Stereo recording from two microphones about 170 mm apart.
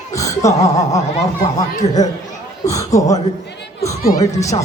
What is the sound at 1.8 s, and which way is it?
Music, 35° left (ahead or behind).